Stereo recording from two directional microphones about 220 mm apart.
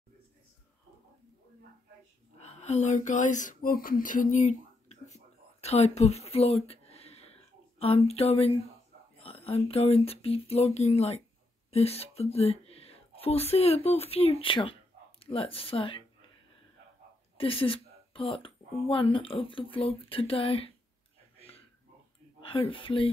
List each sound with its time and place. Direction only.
2.3 s a sound: 30° left (ahead or behind)
7.8 s speech: 25° left (ahead or behind)
17.4 s speech: 25° left (ahead or behind)
22.4 s speech: 25° left (ahead or behind)